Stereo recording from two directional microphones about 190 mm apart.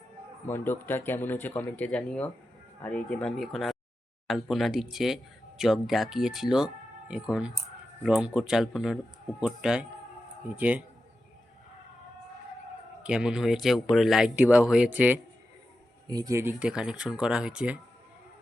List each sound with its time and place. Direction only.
0.4 s speech: 10° left (ahead or behind); by 10.8 s 5° right (ahead or behind)
13.0 s speech: 5° right (ahead or behind)
16.0 s speech: 20° right (ahead or behind)
16.6 s speech: 5° right (ahead or behind)